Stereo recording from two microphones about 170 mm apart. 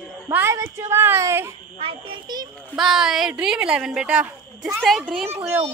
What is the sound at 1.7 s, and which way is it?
Speech, 25° right (ahead or behind).